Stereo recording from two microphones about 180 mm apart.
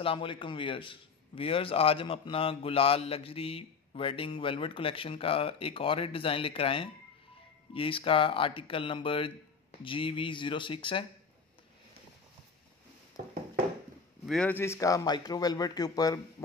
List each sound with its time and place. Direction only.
0.0 s a man's voice: 30° left (ahead or behind)
14.2 s speech: 5° left (ahead or behind); by 16.4 s 20° left (ahead or behind)